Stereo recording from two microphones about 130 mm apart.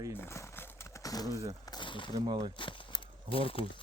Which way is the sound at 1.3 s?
25° right (ahead or behind).